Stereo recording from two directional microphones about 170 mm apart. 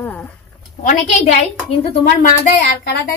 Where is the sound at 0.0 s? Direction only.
10° left (ahead or behind).